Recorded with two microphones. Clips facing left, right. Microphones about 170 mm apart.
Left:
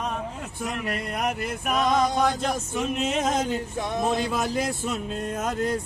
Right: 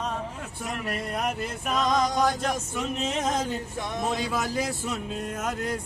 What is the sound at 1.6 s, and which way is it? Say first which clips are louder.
Male singing: left 2 dB; 15° left (ahead or behind).